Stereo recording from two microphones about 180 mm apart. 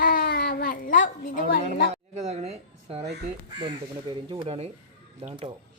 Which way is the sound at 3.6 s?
25° right (ahead or behind).